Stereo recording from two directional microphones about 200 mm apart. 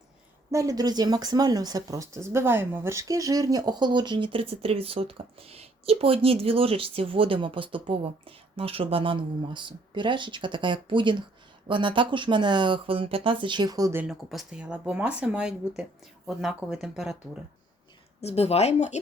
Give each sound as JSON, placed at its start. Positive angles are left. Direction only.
{"t": 0.5, "sound": "speech", "side_deg": -15}
{"t": 18.2, "sound": "speech", "side_deg": 30}